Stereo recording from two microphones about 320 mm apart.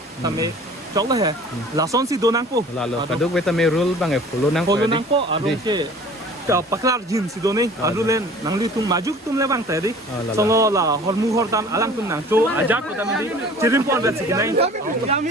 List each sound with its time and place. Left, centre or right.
0.3 s speech: centre
3.1 s speech: centre
4.7 s speech: centre